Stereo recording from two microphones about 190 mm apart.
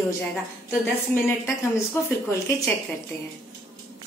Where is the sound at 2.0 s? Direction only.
15° left (ahead or behind).